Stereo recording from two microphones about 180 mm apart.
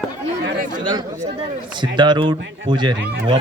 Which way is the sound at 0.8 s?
25° right (ahead or behind).